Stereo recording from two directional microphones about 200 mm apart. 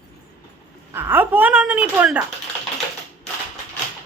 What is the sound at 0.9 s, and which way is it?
A woman's voice, 10° right (ahead or behind).